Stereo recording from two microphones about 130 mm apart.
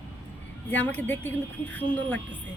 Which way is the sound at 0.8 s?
15° left (ahead or behind).